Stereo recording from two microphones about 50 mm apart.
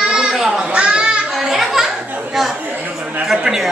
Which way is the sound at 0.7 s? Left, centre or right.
Right.